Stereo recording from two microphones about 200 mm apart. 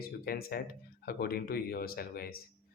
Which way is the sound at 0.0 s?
50° left (ahead or behind).